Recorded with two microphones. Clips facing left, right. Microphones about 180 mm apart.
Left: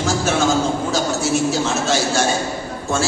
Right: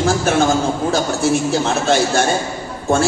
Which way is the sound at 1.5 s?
55° right (ahead or behind).